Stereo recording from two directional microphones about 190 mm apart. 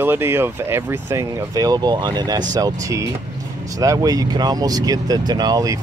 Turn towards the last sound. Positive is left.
turn(degrees=-20)  # may be behind; listen again after turning